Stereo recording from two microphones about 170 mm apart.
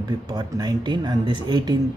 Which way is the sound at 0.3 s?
25° right (ahead or behind).